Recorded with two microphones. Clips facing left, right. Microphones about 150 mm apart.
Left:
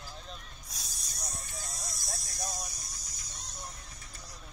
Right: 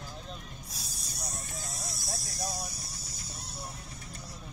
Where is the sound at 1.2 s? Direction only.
Centre (ahead or behind).